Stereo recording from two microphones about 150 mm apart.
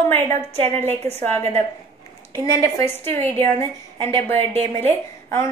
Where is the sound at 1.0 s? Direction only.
15° left (ahead or behind).